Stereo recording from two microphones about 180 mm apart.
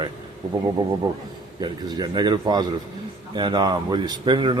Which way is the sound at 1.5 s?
20° right (ahead or behind).